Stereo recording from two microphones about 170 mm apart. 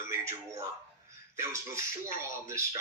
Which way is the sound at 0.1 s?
15° right (ahead or behind).